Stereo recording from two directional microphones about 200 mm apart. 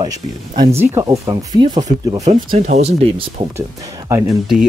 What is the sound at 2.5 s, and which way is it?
Speech, 35° right (ahead or behind).